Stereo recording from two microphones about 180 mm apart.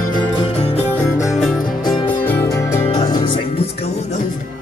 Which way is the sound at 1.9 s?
25° left (ahead or behind).